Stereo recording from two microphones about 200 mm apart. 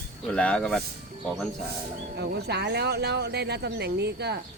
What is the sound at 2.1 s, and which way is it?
Speech, 55° right (ahead or behind).